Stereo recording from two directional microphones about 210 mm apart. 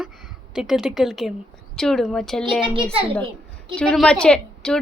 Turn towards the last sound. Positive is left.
turn(degrees=5)  # may be behind; listen again after turning